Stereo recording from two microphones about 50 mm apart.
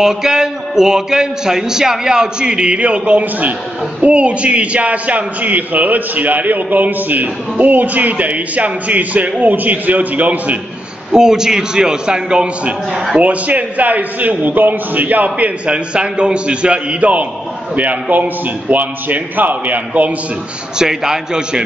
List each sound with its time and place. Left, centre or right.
0.0 s a man's voice: centre; by 10.6 s right
11.1 s a man's voice: centre
13.2 s a man's voice: right
20.8 s a man's voice: centre